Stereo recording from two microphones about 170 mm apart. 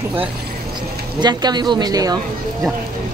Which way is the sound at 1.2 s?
25° right (ahead or behind).